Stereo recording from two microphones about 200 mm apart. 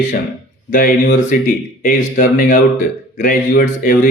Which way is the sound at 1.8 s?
45° left (ahead or behind).